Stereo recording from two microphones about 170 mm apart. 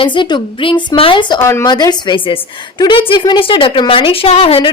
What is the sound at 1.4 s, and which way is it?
A woman's voice, 15° left (ahead or behind).